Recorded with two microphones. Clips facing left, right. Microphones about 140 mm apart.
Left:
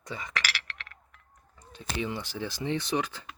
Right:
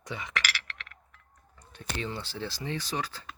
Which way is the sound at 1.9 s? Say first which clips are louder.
Left 3 dB; 15° left (ahead or behind).